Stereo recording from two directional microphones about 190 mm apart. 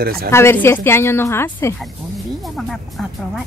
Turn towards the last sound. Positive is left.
turn(degrees=0)  # may be behind; listen again after turning